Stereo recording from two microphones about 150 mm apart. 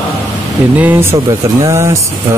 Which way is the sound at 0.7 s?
15° right (ahead or behind).